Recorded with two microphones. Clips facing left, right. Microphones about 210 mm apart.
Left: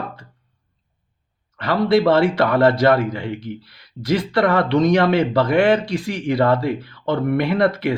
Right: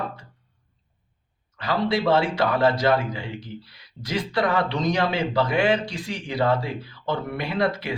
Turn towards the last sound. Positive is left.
turn(degrees=60)  # may be behind; listen again after turning